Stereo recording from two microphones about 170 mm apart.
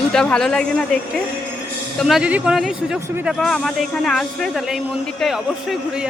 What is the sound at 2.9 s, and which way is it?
Speech, 15° right (ahead or behind).